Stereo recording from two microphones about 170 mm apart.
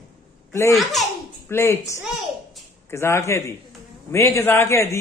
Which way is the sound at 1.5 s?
15° left (ahead or behind).